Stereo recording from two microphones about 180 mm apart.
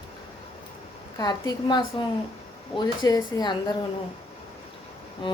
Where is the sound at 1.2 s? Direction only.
20° left (ahead or behind).